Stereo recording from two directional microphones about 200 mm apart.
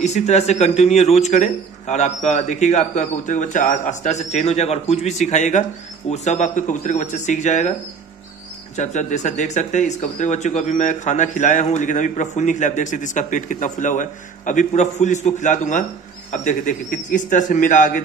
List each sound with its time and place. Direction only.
0.0 s speech: 35° left (ahead or behind)
8.7 s speech: 35° left (ahead or behind)